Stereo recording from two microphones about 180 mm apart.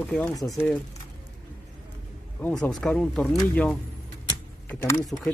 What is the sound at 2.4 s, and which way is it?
Speech, 10° left (ahead or behind).